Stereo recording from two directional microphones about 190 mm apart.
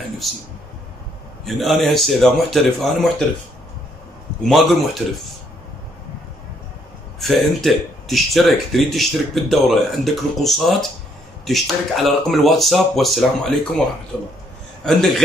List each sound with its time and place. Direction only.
0.2 s speech: centre (ahead or behind)
1.4 s speech: centre (ahead or behind)
4.5 s speech: centre (ahead or behind)
7.2 s speech: centre (ahead or behind)
14.9 s speech: centre (ahead or behind)